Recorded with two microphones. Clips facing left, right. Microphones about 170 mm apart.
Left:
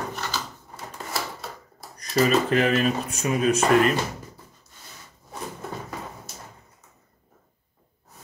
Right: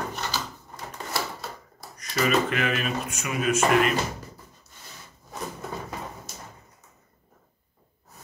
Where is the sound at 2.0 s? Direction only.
35° left (ahead or behind).